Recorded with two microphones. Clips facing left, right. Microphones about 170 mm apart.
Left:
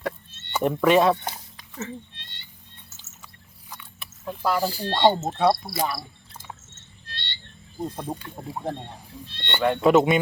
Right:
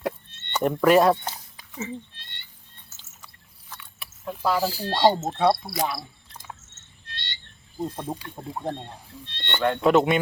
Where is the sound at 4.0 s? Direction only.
Centre (ahead or behind).